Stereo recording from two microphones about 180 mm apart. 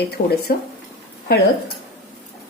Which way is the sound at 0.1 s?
60° left (ahead or behind).